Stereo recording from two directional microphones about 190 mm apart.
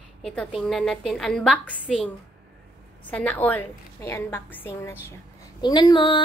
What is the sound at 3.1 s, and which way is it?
A woman's voice, 5° left (ahead or behind).